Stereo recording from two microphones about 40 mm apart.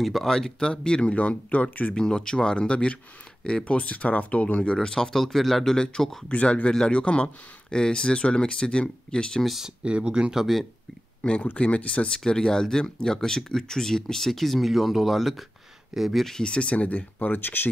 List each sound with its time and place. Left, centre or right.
0.0 s speech: centre
0.6 s speech: left
1.1 s speech: left
2.0 s speech: centre; by 4.7 s left
4.8 s speech: centre
5.8 s speech: centre
6.2 s speech: left
9.8 s speech: right
11.5 s speech: left
12.3 s speech: centre
16.3 s speech: left